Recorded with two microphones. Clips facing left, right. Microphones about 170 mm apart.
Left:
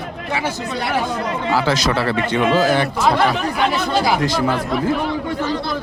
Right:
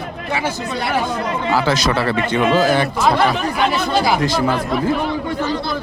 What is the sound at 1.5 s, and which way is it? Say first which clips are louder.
A man's voice: right 1 dB; 55° right (ahead or behind).